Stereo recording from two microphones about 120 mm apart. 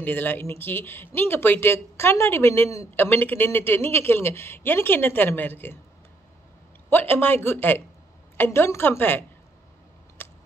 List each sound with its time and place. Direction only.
0.0 s speech: 15° left (ahead or behind)
6.9 s speech: 15° left (ahead or behind)
10.2 s a sound: 15° left (ahead or behind)